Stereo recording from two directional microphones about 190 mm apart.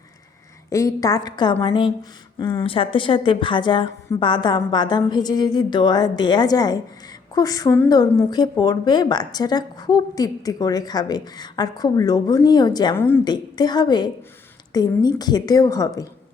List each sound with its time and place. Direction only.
0.7 s a woman's voice: 15° left (ahead or behind)
13.0 s a woman's voice: 10° left (ahead or behind)
13.2 s a woman's voice: 20° left (ahead or behind)